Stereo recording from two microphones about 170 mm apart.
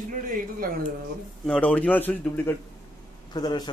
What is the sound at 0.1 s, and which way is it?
Speech, 50° right (ahead or behind).